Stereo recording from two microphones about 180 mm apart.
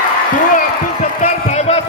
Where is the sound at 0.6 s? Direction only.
40° left (ahead or behind).